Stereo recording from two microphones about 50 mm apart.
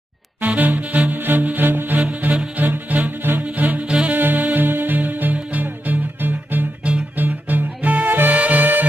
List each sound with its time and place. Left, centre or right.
0.5 s music: right
2.2 s music: centre
2.5 s music: right
3.4 s music: right